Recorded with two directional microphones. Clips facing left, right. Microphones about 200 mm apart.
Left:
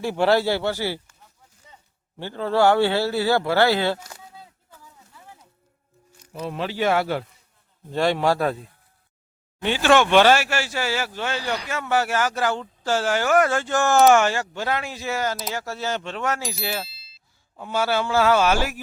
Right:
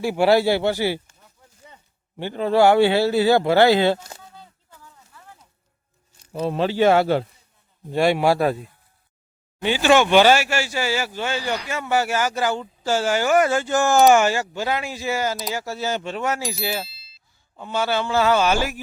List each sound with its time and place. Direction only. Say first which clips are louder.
0.0 s a man's voice: right 3 dB; 10° right (ahead or behind)
2.1 s a man's voice: right 3 dB; 15° right (ahead or behind)
4.4 s a sound: even; 10° left (ahead or behind)
6.1 s speech: right 6 dB; 25° right (ahead or behind)
7.9 s a man's voice: right 3 dB; 10° right (ahead or behind)